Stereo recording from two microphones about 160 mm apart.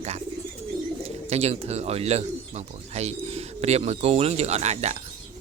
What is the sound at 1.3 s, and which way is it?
Speech, 40° right (ahead or behind).